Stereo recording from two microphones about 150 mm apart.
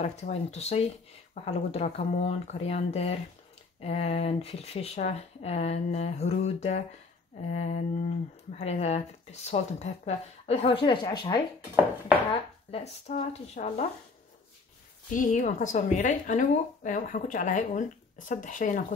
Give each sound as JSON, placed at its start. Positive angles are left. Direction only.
{"t": 0.0, "sound": "speech", "side_deg": 50}
{"t": 12.7, "sound": "speech", "side_deg": 45}
{"t": 15.1, "sound": "speech", "side_deg": 60}